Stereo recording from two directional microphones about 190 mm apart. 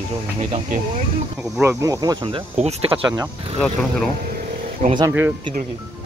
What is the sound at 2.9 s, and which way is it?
Speech, 10° right (ahead or behind).